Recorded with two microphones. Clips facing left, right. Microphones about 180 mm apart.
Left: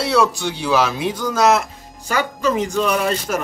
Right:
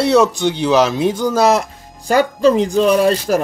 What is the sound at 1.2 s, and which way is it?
Speech, 30° right (ahead or behind).